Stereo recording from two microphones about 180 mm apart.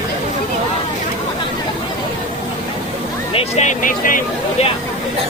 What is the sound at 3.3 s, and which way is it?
Speech, 35° left (ahead or behind).